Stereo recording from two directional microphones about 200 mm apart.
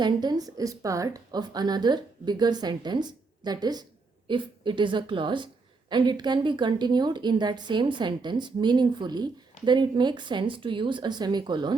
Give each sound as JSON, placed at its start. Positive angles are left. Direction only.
{"t": 0.0, "sound": "a woman's voice", "side_deg": -20}